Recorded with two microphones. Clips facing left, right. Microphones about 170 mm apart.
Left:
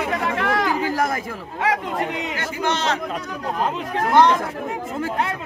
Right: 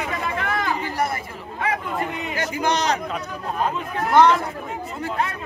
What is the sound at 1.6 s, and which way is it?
Speech, 80° left.